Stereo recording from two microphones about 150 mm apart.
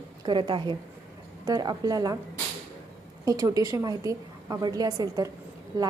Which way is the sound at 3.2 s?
25° right (ahead or behind).